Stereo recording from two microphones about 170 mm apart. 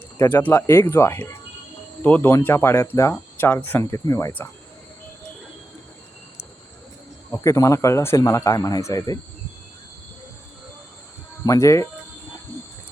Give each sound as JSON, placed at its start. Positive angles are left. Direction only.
{"t": 0.2, "sound": "speech", "side_deg": 10}
{"t": 7.3, "sound": "speech", "side_deg": 15}
{"t": 11.4, "sound": "speech", "side_deg": 20}